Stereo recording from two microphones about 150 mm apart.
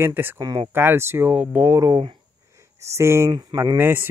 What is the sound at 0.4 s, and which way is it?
Speech, 25° right (ahead or behind).